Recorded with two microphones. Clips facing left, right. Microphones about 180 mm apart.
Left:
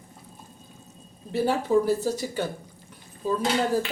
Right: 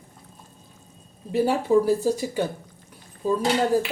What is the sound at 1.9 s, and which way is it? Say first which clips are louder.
Speech: right 3 dB; 10° right (ahead or behind).